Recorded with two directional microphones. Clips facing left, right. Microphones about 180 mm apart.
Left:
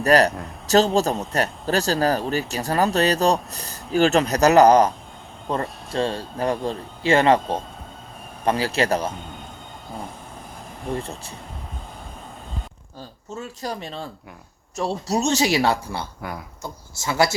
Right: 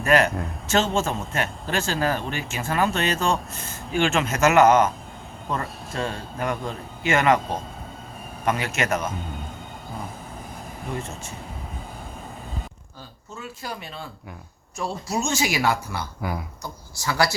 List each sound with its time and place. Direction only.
0.0 s speech: 35° left (ahead or behind)
8.4 s speech: 30° left (ahead or behind)
13.3 s speech: 40° left (ahead or behind); by 17.3 s 20° left (ahead or behind)